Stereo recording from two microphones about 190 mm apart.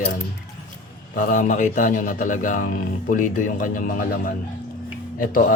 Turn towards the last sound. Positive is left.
turn(degrees=45)  # may be behind; listen again after turning